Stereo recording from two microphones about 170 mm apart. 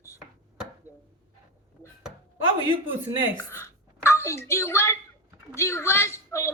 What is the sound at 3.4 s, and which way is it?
A child's voice, 15° left (ahead or behind).